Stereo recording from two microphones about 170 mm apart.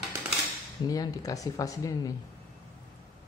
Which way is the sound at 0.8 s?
20° left (ahead or behind).